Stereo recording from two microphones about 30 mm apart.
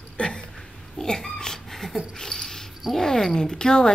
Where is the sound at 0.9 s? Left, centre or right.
Centre.